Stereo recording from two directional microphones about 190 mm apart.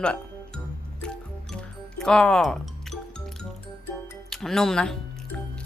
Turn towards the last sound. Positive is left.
turn(degrees=5)  # may be behind; listen again after turning